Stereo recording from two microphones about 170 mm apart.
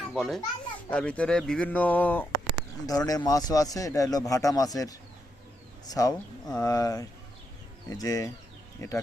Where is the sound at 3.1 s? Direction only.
20° left (ahead or behind).